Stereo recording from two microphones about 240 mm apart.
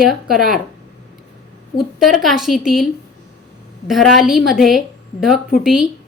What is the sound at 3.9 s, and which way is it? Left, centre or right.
A woman's voice, centre.